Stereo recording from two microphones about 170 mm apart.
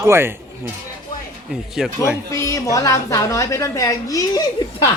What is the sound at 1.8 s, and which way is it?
Speech, 5° right (ahead or behind).